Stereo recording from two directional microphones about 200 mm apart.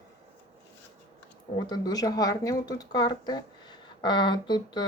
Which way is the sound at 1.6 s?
20° left (ahead or behind).